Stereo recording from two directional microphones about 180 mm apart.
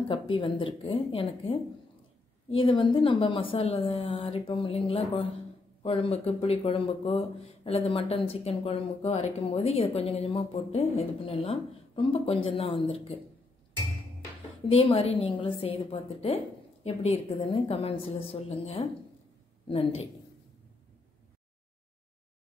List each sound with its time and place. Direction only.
0.1 s a woman's voice: 30° left (ahead or behind)
14.7 s speech: 30° left (ahead or behind)